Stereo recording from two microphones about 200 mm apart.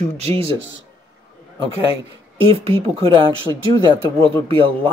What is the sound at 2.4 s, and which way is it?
Speech, 30° right (ahead or behind).